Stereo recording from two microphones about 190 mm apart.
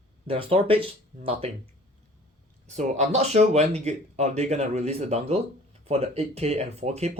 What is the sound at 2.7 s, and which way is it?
Speech, 35° right (ahead or behind).